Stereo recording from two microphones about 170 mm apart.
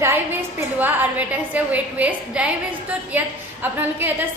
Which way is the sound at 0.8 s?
10° right (ahead or behind).